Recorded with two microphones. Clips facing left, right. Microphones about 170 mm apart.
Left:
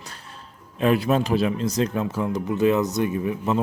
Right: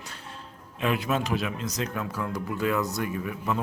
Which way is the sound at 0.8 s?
35° left (ahead or behind).